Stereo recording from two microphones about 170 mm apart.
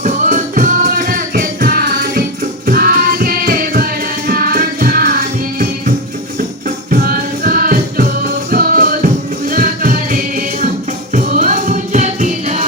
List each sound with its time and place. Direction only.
0.0 s music: 45° right (ahead or behind)